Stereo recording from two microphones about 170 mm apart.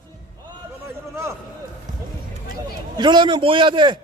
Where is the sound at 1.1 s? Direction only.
15° right (ahead or behind).